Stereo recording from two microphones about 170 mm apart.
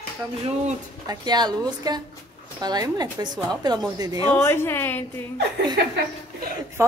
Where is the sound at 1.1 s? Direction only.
25° right (ahead or behind).